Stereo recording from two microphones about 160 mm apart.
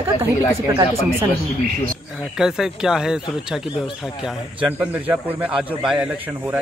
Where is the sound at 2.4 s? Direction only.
5° right (ahead or behind).